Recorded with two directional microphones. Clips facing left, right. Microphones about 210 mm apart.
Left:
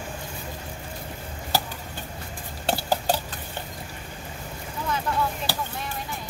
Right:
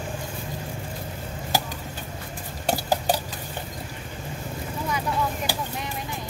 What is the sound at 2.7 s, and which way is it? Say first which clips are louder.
Stir: right 1 dB; 10° right (ahead or behind).